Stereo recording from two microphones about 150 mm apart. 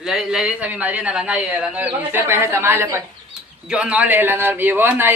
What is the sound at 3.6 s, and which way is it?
Speech, 5° right (ahead or behind).